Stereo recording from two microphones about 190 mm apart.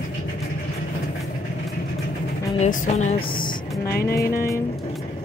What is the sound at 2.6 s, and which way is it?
Speech, 40° left (ahead or behind).